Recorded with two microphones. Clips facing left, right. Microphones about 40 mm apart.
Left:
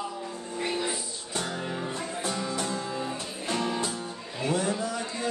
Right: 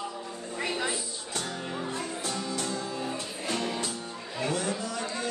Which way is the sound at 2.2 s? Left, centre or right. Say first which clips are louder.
Left 4 dB; centre.